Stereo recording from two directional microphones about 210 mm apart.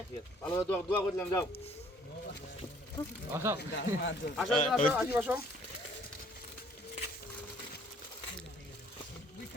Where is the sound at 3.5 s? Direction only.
50° left (ahead or behind).